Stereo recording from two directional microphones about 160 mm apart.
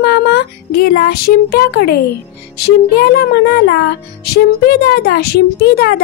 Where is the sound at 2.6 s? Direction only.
85° left.